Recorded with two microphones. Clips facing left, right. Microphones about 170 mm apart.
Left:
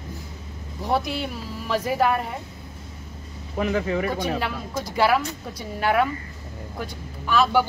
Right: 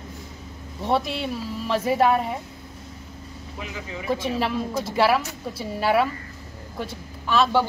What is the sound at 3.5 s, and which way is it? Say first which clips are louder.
Speech: left 12 dB; 60° left (ahead or behind).